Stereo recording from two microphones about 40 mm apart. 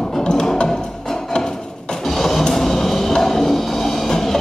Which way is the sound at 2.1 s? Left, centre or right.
Centre.